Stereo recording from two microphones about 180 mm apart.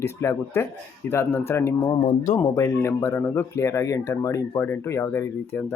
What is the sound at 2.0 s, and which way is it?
Speech, 40° left (ahead or behind).